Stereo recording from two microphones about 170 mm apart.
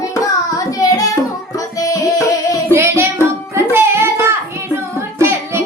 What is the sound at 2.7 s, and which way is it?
Music, 15° right (ahead or behind).